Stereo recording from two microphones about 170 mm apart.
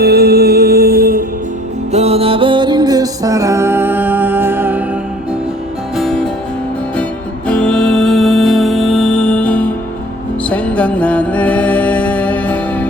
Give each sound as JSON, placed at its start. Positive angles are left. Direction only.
{"t": 0.0, "sound": "music", "side_deg": -65}
{"t": 1.9, "sound": "music", "side_deg": -40}
{"t": 6.0, "sound": "music", "side_deg": 0}
{"t": 7.4, "sound": "music", "side_deg": 5}